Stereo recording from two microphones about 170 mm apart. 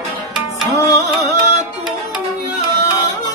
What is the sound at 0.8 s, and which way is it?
Music, 20° left (ahead or behind).